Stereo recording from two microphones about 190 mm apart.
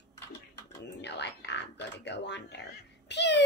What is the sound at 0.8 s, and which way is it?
A child's voice, 65° left (ahead or behind).